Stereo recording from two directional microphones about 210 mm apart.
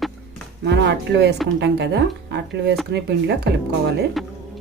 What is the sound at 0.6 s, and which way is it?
Speech, 55° right (ahead or behind).